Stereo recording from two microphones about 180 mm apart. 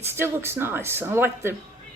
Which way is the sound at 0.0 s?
15° right (ahead or behind).